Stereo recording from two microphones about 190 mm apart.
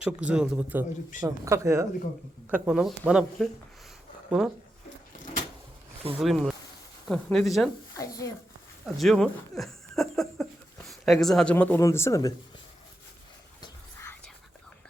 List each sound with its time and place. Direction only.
0.0 s speech: 5° right (ahead or behind)
2.5 s speech: 5° right (ahead or behind)
6.1 s speech: centre (ahead or behind)
7.9 s speech: 20° left (ahead or behind)
9.0 s speech: centre (ahead or behind)
13.6 s whispering: 15° left (ahead or behind)